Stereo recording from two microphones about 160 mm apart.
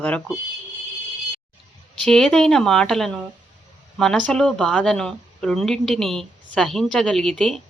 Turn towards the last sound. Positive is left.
turn(degrees=5)  # may be behind; listen again after turning